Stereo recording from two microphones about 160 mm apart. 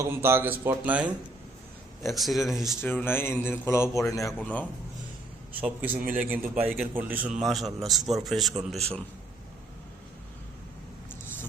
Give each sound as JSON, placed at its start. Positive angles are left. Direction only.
{"t": 0.0, "sound": "a man's voice", "side_deg": -15}
{"t": 3.0, "sound": "speech", "side_deg": 15}
{"t": 5.5, "sound": "speech", "side_deg": -10}
{"t": 6.0, "sound": "a man's voice", "side_deg": -60}
{"t": 6.3, "sound": "a man's voice", "side_deg": -10}